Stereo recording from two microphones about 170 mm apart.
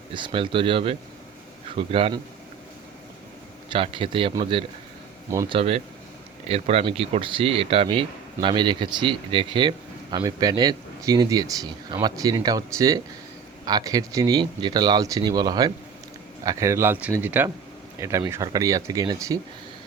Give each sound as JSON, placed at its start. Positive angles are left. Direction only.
{"t": 0.1, "sound": "a man's voice", "side_deg": -30}
{"t": 3.7, "sound": "a man's voice", "side_deg": -30}